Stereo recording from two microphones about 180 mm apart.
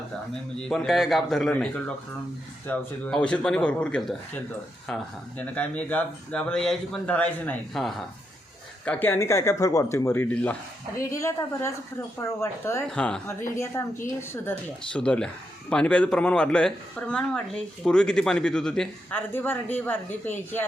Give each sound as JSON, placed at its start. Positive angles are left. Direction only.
{"t": 0.6, "sound": "a man's voice", "side_deg": 5}
{"t": 5.4, "sound": "a man's voice", "side_deg": 10}